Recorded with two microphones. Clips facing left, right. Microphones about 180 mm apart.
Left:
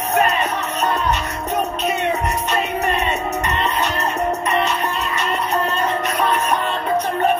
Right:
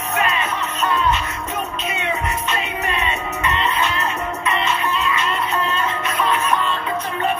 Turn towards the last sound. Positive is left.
turn(degrees=40)  # may be behind; listen again after turning